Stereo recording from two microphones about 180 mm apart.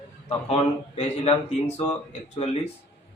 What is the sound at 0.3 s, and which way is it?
Speech, 35° left (ahead or behind).